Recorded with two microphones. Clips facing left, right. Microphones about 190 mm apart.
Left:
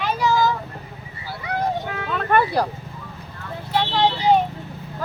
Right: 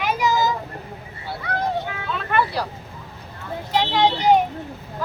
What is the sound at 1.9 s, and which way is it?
Vehicle, 50° left (ahead or behind).